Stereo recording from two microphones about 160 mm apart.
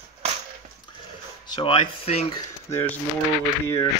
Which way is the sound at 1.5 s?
30° left (ahead or behind).